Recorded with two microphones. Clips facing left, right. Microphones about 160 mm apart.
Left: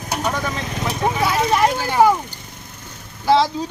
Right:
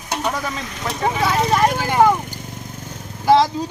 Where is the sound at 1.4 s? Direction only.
5° left (ahead or behind).